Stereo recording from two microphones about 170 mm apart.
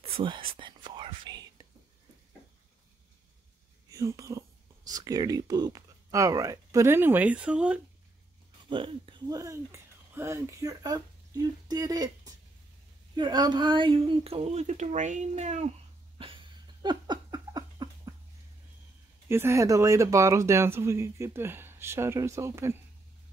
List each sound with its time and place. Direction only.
0.0 s whispering: 30° right (ahead or behind)
3.9 s speech: 20° right (ahead or behind)
8.6 s speech: 30° right (ahead or behind)
9.4 s speech: 15° right (ahead or behind); by 15.7 s 40° right (ahead or behind)
16.2 s a sound: 30° right (ahead or behind)
19.2 s speech: 15° right (ahead or behind)